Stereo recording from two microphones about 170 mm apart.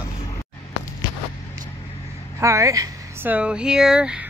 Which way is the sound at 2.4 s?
20° right (ahead or behind).